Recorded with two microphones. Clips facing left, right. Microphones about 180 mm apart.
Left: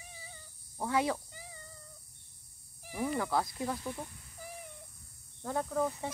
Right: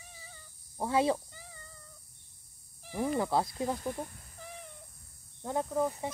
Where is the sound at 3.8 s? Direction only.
45° right (ahead or behind).